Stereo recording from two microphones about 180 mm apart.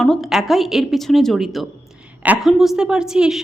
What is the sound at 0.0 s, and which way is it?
A woman's voice, centre (ahead or behind).